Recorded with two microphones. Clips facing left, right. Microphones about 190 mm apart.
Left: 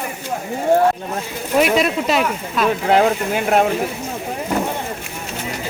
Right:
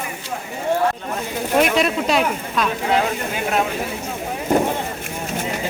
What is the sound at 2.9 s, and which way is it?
Speech, 55° left (ahead or behind).